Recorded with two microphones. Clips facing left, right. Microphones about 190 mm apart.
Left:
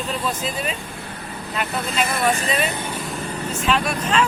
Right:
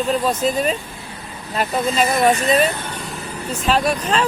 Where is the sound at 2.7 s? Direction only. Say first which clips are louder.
Left 1 dB; 10° left (ahead or behind).